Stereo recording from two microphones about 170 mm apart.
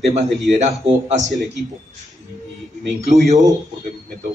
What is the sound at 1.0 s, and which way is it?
Speech, 45° right (ahead or behind).